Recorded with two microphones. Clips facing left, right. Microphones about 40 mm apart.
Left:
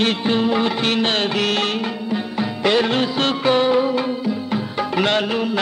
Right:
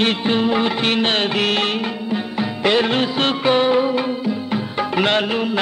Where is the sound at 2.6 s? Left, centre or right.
Right.